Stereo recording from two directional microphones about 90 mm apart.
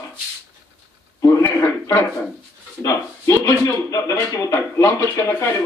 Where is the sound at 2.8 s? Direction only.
35° left (ahead or behind).